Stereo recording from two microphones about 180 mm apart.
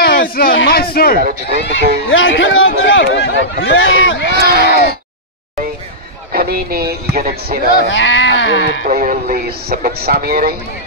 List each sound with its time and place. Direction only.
0.0 s a sound: 55° left (ahead or behind)
0.6 s speech: 60° left (ahead or behind)
1.2 s speech: 55° right (ahead or behind)
2.0 s speech: 90° left
4.4 s speech: 60° right (ahead or behind)
6.3 s speech: 60° right (ahead or behind)
7.9 s speech: 90° left
8.8 s speech: 45° right (ahead or behind)